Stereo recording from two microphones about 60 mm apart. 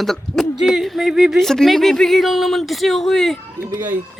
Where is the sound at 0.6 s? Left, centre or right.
Centre.